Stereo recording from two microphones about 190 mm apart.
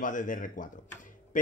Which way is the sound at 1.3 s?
45° left (ahead or behind).